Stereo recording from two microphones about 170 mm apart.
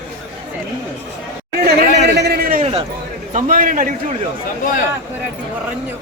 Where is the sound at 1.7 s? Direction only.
75° right (ahead or behind); by 2.6 s 60° right (ahead or behind).